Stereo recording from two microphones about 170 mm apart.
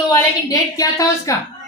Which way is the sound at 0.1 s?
20° left (ahead or behind).